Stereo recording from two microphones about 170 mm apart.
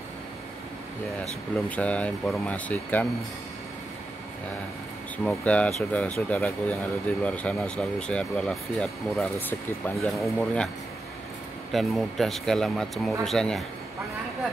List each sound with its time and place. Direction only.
1.8 s speech: 10° left (ahead or behind)
5.1 s speech: 10° left (ahead or behind)
11.7 s speech: centre (ahead or behind)